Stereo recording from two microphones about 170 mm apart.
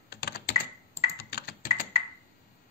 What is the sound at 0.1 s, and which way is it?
Typing, 65° left (ahead or behind).